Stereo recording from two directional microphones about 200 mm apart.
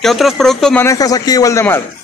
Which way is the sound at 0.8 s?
15° left (ahead or behind).